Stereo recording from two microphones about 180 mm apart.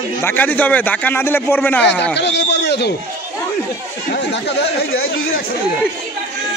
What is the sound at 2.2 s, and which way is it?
Speech, 70° left (ahead or behind).